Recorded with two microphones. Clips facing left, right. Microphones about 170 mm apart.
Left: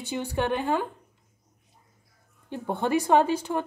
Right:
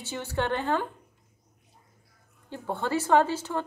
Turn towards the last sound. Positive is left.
turn(degrees=15)  # may be behind; listen again after turning